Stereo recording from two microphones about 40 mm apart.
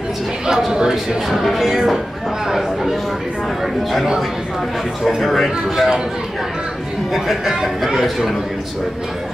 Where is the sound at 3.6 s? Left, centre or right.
Centre.